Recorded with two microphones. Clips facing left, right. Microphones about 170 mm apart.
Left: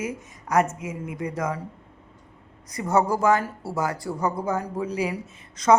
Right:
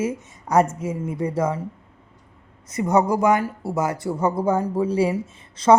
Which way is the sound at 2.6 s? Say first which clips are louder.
Right 3 dB; 20° right (ahead or behind).